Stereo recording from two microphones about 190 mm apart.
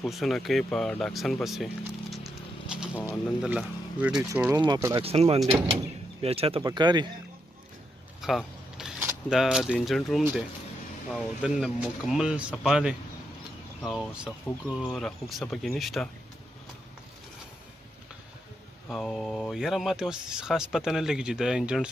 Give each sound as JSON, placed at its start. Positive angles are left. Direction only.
{"t": 0.0, "sound": "speech", "side_deg": 0}
{"t": 2.7, "sound": "insect", "side_deg": -5}
{"t": 3.0, "sound": "speech", "side_deg": 10}
{"t": 3.4, "sound": "speech", "side_deg": -5}
{"t": 4.6, "sound": "speech", "side_deg": -20}
{"t": 5.1, "sound": "speech", "side_deg": -35}
{"t": 8.2, "sound": "speech", "side_deg": 0}
{"t": 18.9, "sound": "speech", "side_deg": 0}